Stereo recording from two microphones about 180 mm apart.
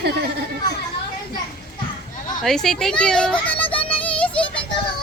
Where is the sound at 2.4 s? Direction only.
Centre (ahead or behind).